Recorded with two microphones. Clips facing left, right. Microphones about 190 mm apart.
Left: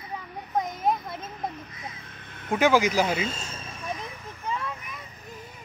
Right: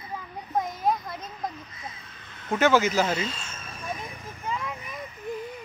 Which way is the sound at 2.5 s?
15° left (ahead or behind).